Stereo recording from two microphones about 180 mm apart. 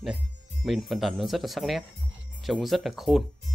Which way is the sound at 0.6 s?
Centre (ahead or behind).